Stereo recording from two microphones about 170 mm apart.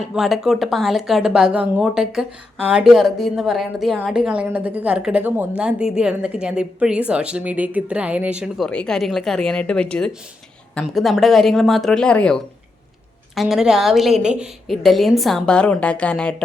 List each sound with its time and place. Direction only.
0.1 s a woman's voice: centre (ahead or behind)